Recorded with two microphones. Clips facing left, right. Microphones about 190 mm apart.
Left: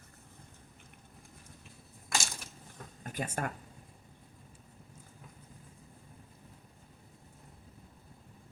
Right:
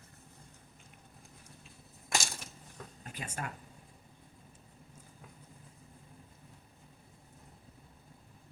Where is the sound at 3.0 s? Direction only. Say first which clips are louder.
Left 6 dB; 50° left (ahead or behind).